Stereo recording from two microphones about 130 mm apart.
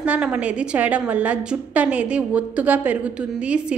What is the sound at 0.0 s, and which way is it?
A woman's voice, 10° right (ahead or behind).